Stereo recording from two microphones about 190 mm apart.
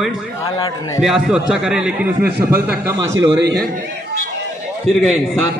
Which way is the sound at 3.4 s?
60° right (ahead or behind).